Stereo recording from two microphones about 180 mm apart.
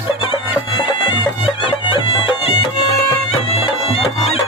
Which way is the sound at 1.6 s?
30° left (ahead or behind).